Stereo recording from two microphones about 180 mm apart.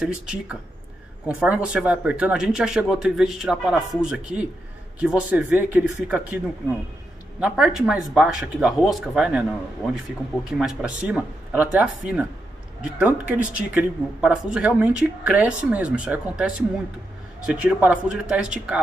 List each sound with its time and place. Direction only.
0.0 s speech: 5° right (ahead or behind)